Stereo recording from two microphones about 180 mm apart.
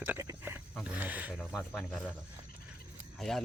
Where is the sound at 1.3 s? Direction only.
Centre (ahead or behind).